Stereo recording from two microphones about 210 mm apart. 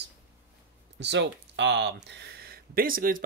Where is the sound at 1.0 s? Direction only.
55° right (ahead or behind).